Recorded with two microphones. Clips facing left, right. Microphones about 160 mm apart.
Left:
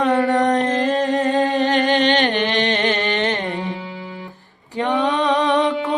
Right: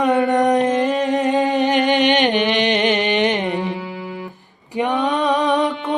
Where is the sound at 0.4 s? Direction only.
15° right (ahead or behind).